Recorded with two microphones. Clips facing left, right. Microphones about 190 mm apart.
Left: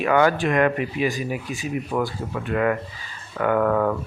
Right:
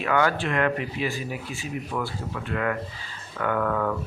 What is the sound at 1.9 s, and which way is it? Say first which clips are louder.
Speech: left 6 dB; 35° left (ahead or behind).